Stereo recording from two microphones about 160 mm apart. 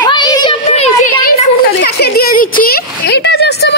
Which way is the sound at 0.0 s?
25° left (ahead or behind).